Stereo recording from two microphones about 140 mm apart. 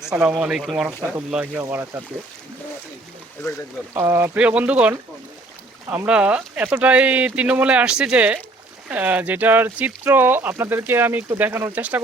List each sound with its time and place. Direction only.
0.2 s speech: 10° right (ahead or behind)
3.9 s speech: 20° right (ahead or behind)
4.4 s speech: 10° right (ahead or behind)
6.1 s speech: 10° right (ahead or behind)